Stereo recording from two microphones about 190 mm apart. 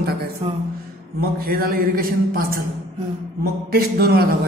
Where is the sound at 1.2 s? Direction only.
50° right (ahead or behind).